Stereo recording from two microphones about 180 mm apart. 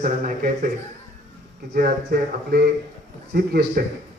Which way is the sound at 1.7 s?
55° right (ahead or behind).